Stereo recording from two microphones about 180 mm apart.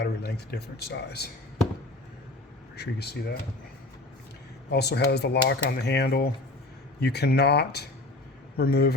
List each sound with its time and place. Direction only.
0.0 s speech: 65° left (ahead or behind)
2.7 s speech: 65° left (ahead or behind)
4.7 s speech: 70° left (ahead or behind)